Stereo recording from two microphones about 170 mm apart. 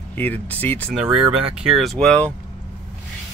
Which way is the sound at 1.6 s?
Centre (ahead or behind).